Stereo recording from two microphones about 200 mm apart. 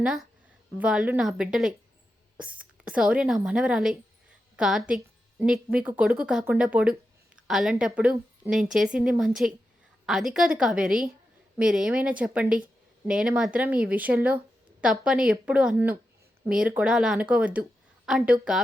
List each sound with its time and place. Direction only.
0.0 s a woman's voice: 5° right (ahead or behind)
4.9 s a sound: 5° right (ahead or behind)
5.8 s a woman's voice: 5° right (ahead or behind)